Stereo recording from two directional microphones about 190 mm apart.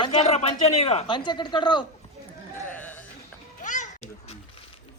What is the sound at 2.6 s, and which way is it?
Sheep, 10° left (ahead or behind).